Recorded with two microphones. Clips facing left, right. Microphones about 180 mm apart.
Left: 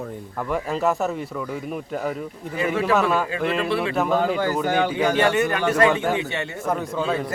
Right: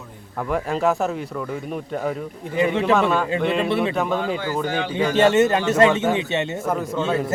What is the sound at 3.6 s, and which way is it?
Speech, 20° right (ahead or behind).